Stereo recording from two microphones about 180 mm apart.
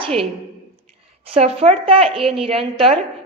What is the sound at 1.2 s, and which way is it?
A woman's voice, 35° right (ahead or behind).